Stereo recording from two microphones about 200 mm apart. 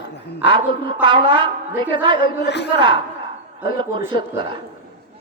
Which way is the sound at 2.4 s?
60° left (ahead or behind).